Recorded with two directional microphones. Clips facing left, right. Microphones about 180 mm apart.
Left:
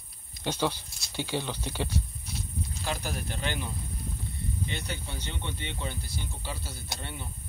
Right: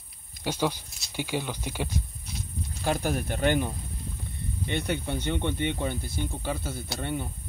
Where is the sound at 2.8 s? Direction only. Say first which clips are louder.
Right 8 dB; 50° right (ahead or behind).